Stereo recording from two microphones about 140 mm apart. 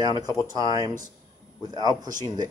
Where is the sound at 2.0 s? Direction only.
65° right (ahead or behind).